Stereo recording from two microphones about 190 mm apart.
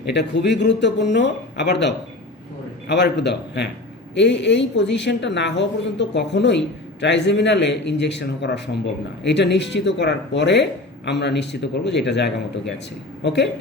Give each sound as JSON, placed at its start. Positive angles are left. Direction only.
{"t": 0.0, "sound": "a woman's voice", "side_deg": 65}